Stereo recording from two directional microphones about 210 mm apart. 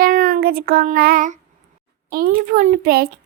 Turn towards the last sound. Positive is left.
turn(degrees=-45)  # may be behind; listen again after turning